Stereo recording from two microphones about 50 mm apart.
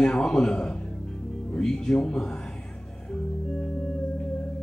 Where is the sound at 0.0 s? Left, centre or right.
Centre.